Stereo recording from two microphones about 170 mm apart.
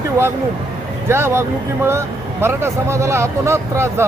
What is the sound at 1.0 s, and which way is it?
Speech, 15° right (ahead or behind).